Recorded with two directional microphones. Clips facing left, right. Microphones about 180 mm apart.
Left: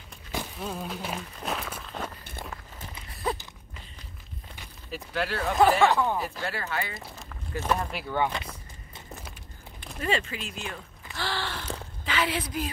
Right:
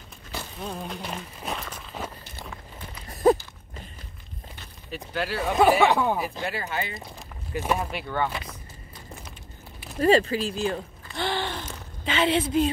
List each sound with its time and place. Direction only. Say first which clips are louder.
0.6 s a sound: even; 5° left (ahead or behind)
3.1 s horse: right 12 dB; 45° right (ahead or behind)
4.9 s speech: right 1 dB; centre (ahead or behind)
5.6 s speech: right 2 dB; 10° right (ahead or behind)
7.5 s speech: right 2 dB; 10° right (ahead or behind)
7.9 s speech: right 1 dB; 5° left (ahead or behind)
9.9 s speech: right 10 dB; 35° right (ahead or behind)
11.1 s sigh: right 4 dB; 20° right (ahead or behind)
12.0 s a woman's voice: right 6 dB; 25° right (ahead or behind)